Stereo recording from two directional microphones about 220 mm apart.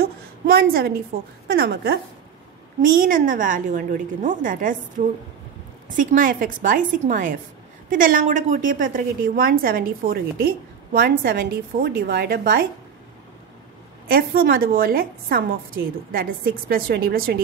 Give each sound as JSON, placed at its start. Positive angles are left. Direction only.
{"t": 0.0, "sound": "a sound", "side_deg": -45}
{"t": 1.5, "sound": "a woman's voice", "side_deg": -45}
{"t": 14.0, "sound": "a woman's voice", "side_deg": -45}